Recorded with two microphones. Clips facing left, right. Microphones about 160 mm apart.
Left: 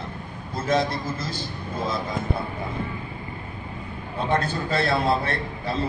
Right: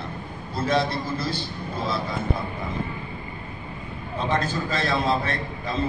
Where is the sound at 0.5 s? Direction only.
45° left (ahead or behind).